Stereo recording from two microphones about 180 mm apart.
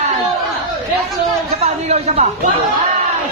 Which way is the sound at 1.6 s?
35° right (ahead or behind).